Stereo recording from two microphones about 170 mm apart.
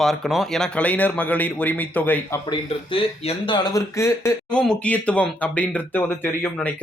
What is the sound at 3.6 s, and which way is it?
Speech, 20° left (ahead or behind).